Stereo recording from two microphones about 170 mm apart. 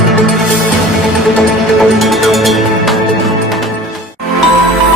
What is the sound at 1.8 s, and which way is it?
Music, centre (ahead or behind).